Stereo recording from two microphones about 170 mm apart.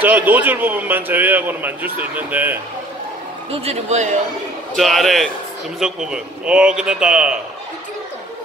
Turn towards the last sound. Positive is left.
turn(degrees=-5)  # may be behind; listen again after turning